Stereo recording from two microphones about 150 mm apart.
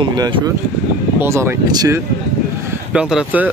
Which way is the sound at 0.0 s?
30° right (ahead or behind).